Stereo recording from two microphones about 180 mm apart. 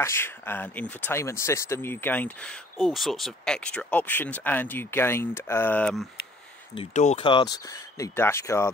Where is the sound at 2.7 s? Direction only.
Centre (ahead or behind).